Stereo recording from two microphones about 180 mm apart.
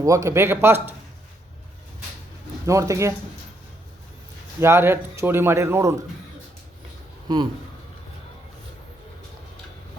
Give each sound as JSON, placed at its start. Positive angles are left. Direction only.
{"t": 0.0, "sound": "speech", "side_deg": -15}
{"t": 2.6, "sound": "speech", "side_deg": -15}
{"t": 4.6, "sound": "speech", "side_deg": -15}